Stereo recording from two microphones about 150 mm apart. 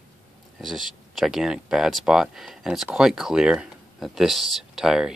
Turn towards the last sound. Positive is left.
turn(degrees=-5)  # may be behind; listen again after turning